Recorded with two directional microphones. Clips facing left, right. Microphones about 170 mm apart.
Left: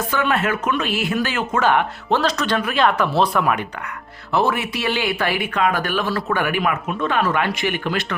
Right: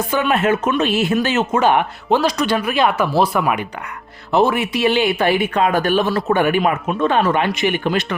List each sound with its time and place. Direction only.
0.1 s speech: 20° right (ahead or behind)
4.3 s speech: 20° right (ahead or behind)